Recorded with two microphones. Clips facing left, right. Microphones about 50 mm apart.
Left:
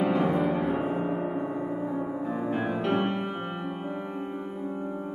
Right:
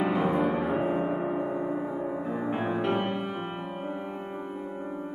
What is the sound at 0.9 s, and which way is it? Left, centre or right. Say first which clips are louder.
Gong: right 1 dB; centre.